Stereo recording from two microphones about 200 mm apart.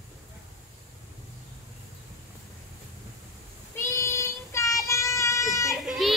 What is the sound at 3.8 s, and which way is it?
Child singing, 15° left (ahead or behind).